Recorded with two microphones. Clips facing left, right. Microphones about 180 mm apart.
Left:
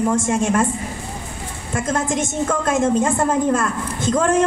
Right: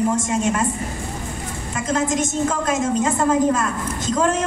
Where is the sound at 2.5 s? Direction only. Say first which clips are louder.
Left 3 dB; 55° left (ahead or behind).